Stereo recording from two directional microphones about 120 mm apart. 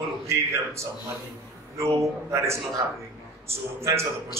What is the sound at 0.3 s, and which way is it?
A man's voice, 25° right (ahead or behind).